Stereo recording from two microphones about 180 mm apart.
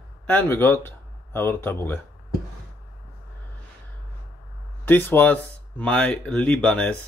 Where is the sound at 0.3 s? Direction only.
10° left (ahead or behind).